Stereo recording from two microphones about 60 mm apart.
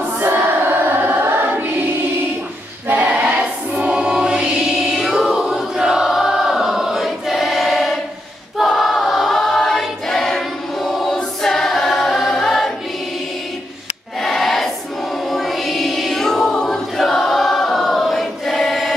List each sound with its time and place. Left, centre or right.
0.2 s choir: right
2.9 s choir: right; by 11.1 s centre
11.1 s a capella: centre
14.2 s choir: centre